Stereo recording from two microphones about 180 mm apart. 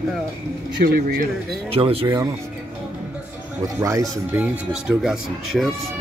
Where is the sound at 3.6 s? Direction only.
15° right (ahead or behind).